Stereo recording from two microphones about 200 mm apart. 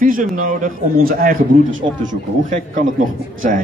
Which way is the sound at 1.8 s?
30° right (ahead or behind).